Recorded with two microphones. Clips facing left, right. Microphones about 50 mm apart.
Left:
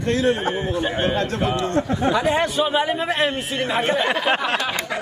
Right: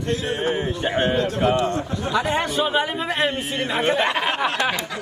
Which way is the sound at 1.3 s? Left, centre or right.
Right.